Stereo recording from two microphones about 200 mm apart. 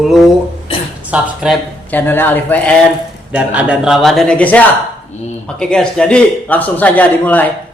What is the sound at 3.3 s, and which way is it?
A man's voice, 5° right (ahead or behind).